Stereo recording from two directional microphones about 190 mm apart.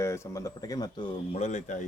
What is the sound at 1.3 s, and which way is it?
Speech, 35° left (ahead or behind).